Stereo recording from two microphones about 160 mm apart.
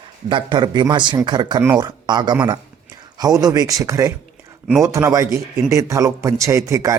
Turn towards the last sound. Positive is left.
turn(degrees=-20)  # may be behind; listen again after turning